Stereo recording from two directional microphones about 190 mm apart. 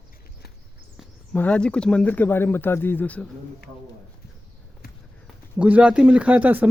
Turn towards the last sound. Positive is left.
turn(degrees=-10)  # may be behind; listen again after turning